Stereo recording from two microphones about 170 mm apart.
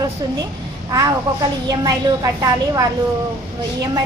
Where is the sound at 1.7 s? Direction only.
20° right (ahead or behind).